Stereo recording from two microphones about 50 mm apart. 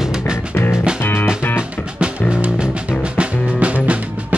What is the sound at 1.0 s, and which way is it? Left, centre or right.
Music, left.